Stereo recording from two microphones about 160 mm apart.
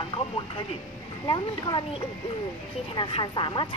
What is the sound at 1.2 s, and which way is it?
Speech, 30° left (ahead or behind).